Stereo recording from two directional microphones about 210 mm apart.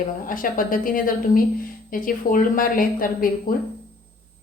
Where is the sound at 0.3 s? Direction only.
40° left (ahead or behind).